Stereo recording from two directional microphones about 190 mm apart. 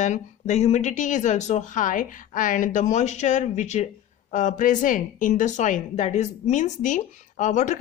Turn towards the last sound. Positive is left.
turn(degrees=40)  # may be behind; listen again after turning